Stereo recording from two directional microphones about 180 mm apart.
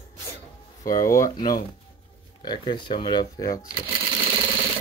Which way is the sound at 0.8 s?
20° left (ahead or behind).